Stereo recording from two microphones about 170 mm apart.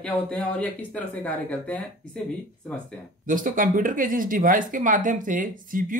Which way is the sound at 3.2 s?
50° right (ahead or behind).